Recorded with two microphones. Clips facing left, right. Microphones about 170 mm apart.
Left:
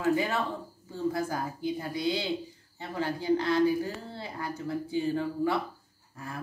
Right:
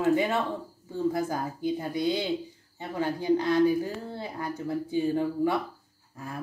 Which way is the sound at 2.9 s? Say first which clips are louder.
Right 2 dB; 15° right (ahead or behind).